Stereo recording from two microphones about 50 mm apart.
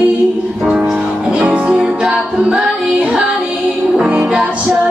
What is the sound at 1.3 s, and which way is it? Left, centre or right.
Music, right.